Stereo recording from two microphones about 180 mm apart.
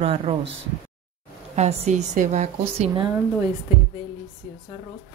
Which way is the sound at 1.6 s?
40° right (ahead or behind).